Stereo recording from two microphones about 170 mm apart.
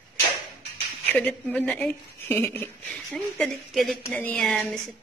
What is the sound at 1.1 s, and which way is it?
Speech, 5° left (ahead or behind).